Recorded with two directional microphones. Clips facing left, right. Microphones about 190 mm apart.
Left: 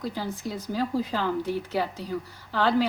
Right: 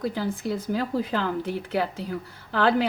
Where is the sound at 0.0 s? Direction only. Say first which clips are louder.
Right 4 dB; 60° right (ahead or behind).